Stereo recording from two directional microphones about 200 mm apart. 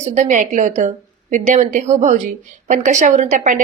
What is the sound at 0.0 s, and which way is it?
A woman's voice, 35° right (ahead or behind).